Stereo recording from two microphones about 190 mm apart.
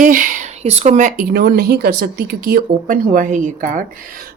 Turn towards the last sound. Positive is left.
turn(degrees=-45)  # may be behind; listen again after turning